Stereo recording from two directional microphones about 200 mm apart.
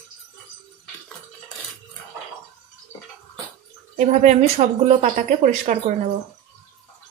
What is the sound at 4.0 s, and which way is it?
Speech, 35° right (ahead or behind).